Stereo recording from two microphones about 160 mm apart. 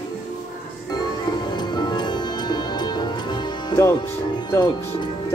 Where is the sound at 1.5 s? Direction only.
25° left (ahead or behind).